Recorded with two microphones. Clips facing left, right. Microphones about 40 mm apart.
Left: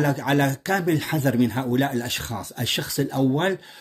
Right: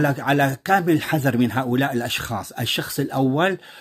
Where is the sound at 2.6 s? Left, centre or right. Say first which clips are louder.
Even; right.